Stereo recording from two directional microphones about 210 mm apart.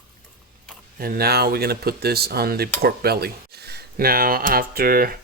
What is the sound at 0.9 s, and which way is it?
Speech, 45° right (ahead or behind).